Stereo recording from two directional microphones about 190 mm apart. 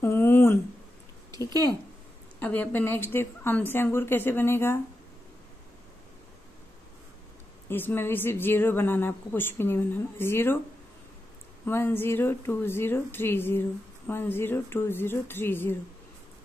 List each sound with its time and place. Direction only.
0.0 s a sound: 10° left (ahead or behind)
1.4 s a woman's voice: 15° left (ahead or behind)
7.7 s a woman's voice: 10° left (ahead or behind)
11.6 s a woman's voice: 10° left (ahead or behind)